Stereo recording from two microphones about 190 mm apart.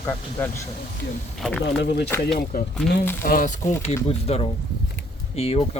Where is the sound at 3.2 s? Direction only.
45° left (ahead or behind).